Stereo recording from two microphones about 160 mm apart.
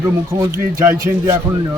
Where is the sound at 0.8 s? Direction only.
20° right (ahead or behind).